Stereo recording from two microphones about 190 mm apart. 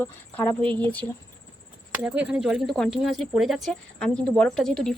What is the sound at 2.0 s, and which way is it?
Speech, 10° right (ahead or behind).